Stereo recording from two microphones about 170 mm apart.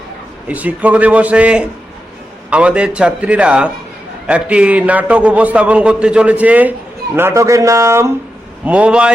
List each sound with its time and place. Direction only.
0.4 s a man's voice: 10° right (ahead or behind)